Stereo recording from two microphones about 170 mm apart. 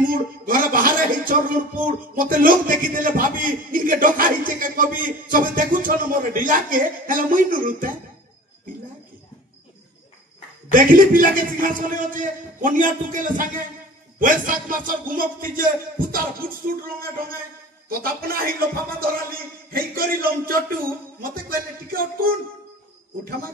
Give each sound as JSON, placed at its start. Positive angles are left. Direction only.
{"t": 0.1, "sound": "a sound", "side_deg": -55}
{"t": 1.9, "sound": "a man's voice", "side_deg": -55}
{"t": 10.7, "sound": "a man's voice", "side_deg": -55}